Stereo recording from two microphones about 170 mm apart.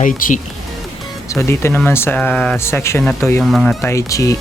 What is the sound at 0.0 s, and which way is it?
Speech, 50° left (ahead or behind).